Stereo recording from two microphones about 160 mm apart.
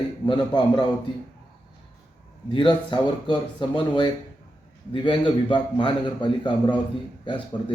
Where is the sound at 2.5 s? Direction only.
30° left (ahead or behind).